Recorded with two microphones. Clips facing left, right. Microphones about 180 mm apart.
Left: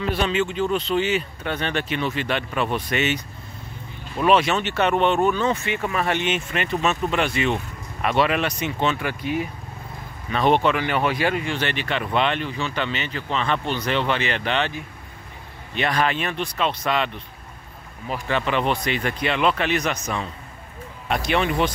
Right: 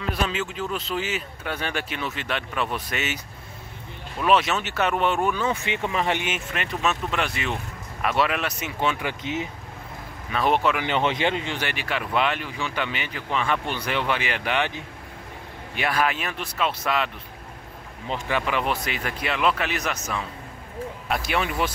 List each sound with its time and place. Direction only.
0.0 s speech: centre (ahead or behind)
4.2 s speech: centre (ahead or behind)
8.8 s speech: 20° right (ahead or behind)
10.3 s speech: 5° right (ahead or behind)
10.8 s speech: 20° right (ahead or behind)
11.6 s speech: 10° right (ahead or behind)
15.7 s speech: 5° right (ahead or behind)
18.3 s speech: 5° right (ahead or behind)